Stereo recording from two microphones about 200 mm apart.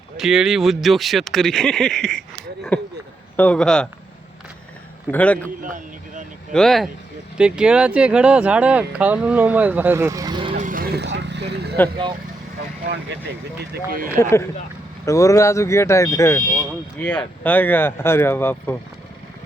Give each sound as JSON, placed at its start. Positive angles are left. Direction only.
{"t": 0.2, "sound": "speech", "side_deg": -5}
{"t": 3.3, "sound": "speech", "side_deg": 5}
{"t": 5.1, "sound": "speech", "side_deg": 5}
{"t": 5.6, "sound": "a sound", "side_deg": -40}
{"t": 6.5, "sound": "speech", "side_deg": 0}
{"t": 10.6, "sound": "vehicle", "side_deg": -45}
{"t": 14.2, "sound": "speech", "side_deg": 15}
{"t": 16.6, "sound": "speech", "side_deg": 5}